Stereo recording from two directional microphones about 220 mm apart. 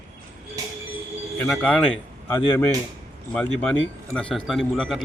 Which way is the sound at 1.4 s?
5° left (ahead or behind).